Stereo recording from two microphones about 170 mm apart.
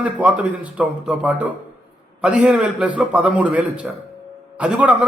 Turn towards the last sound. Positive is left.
turn(degrees=-5)  # may be behind; listen again after turning